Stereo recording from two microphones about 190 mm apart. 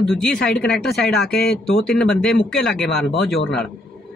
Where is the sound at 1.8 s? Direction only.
5° left (ahead or behind).